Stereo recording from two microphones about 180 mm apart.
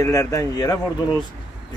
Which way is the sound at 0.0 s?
15° left (ahead or behind).